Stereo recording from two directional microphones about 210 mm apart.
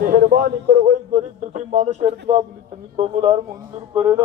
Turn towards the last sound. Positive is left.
turn(degrees=-10)  # may be behind; listen again after turning